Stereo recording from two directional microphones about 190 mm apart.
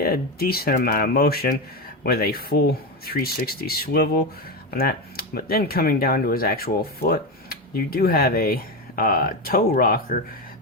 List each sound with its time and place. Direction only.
0.0 s speech: 55° left (ahead or behind)